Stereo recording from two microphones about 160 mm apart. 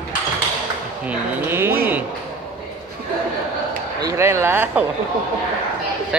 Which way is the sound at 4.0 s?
20° right (ahead or behind).